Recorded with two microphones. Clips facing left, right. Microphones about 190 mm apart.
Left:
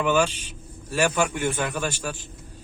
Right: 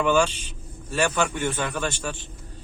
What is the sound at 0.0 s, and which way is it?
A man's voice, 5° left (ahead or behind).